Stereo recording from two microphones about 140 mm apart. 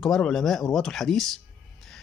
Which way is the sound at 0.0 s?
5° left (ahead or behind).